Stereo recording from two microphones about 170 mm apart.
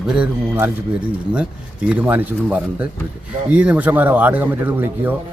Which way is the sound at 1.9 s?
10° right (ahead or behind).